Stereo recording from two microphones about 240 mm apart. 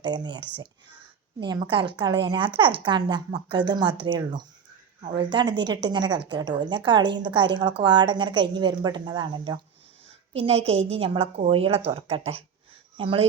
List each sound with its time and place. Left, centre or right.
0.0 s a woman's voice: centre